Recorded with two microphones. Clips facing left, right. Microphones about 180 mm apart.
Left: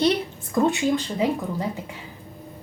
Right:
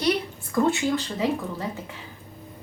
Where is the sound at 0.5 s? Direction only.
20° left (ahead or behind).